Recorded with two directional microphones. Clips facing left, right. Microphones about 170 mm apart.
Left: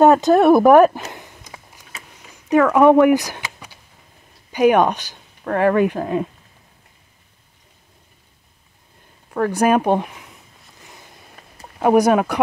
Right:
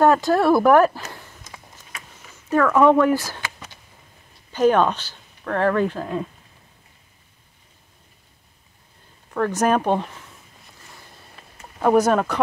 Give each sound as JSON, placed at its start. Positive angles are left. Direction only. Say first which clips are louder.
{"t": 0.0, "sound": "a sound", "louder": "left 5 dB", "side_deg": 20}
{"t": 4.5, "sound": "speech", "louder": "left 3 dB", "side_deg": 15}
{"t": 9.3, "sound": "speech", "louder": "left 3 dB", "side_deg": 10}
{"t": 11.8, "sound": "speech", "louder": "left 3 dB", "side_deg": 15}